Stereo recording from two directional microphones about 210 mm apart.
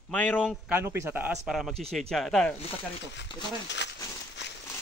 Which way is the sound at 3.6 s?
55° left (ahead or behind).